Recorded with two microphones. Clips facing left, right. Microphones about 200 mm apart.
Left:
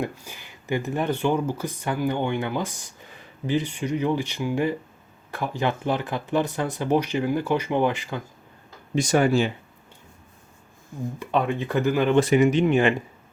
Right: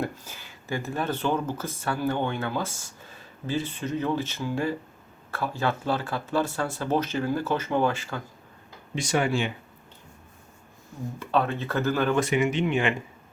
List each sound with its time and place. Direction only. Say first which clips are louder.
0.0 s speech: left 2 dB; 15° left (ahead or behind)
9.0 s speech: left 5 dB; 45° left (ahead or behind)
11.2 s speech: left 1 dB; 15° left (ahead or behind)
12.1 s speech: left 6 dB; 35° left (ahead or behind)